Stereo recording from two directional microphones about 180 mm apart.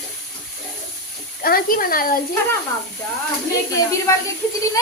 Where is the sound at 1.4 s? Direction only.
55° left (ahead or behind).